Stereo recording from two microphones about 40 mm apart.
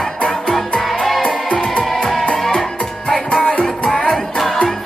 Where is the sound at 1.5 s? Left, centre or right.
Centre.